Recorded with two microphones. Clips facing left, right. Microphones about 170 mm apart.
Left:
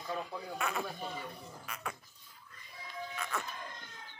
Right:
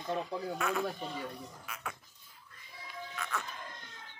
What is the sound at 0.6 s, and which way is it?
Speech, centre (ahead or behind).